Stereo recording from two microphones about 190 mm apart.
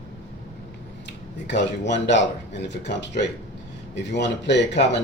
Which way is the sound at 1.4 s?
70° left (ahead or behind).